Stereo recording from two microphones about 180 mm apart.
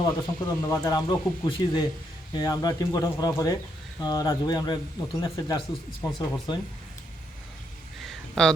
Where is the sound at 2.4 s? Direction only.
20° left (ahead or behind).